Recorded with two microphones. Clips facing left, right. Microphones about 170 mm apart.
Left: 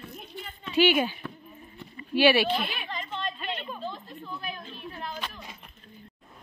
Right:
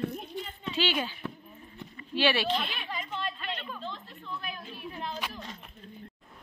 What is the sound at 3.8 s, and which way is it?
Speech, 10° left (ahead or behind).